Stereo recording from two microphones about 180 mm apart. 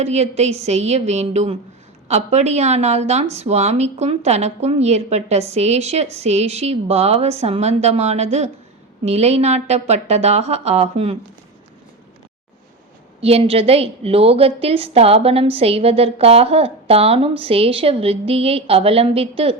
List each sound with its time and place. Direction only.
0.0 s a woman's voice: 35° right (ahead or behind)
13.2 s a woman's voice: 35° right (ahead or behind)